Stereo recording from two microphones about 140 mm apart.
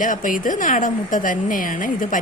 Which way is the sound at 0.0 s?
70° left (ahead or behind).